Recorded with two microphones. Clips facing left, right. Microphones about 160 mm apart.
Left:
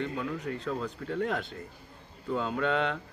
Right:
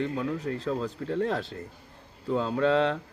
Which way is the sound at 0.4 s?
30° right (ahead or behind).